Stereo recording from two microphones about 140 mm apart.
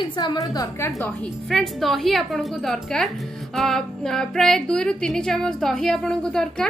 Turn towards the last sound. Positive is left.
turn(degrees=5)  # may be behind; listen again after turning